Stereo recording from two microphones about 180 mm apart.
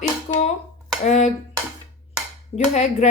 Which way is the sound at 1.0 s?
40° left (ahead or behind).